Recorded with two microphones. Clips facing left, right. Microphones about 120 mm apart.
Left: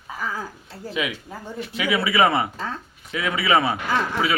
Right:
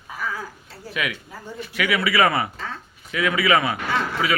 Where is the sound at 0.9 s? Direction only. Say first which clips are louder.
Left 1 dB; 25° left (ahead or behind).